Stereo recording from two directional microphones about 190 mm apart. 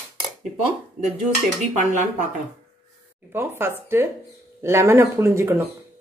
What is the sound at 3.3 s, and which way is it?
Speech, 10° right (ahead or behind).